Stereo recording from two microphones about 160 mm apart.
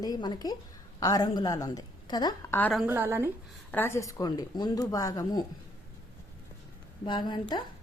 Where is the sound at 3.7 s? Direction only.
15° left (ahead or behind).